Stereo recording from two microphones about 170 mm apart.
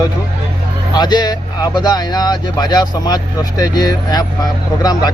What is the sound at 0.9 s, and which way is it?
Speech, 25° left (ahead or behind).